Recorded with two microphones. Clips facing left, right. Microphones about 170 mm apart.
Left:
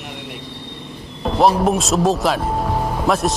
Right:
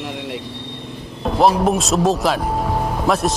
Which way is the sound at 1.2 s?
Centre (ahead or behind).